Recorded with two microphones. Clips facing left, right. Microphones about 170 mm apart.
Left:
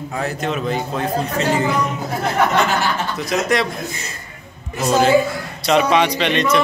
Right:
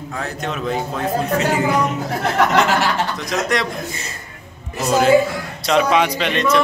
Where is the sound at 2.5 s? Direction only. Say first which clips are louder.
Right 2 dB; 80° right.